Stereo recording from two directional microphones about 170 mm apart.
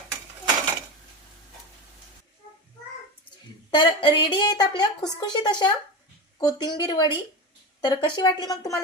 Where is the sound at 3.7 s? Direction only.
25° left (ahead or behind).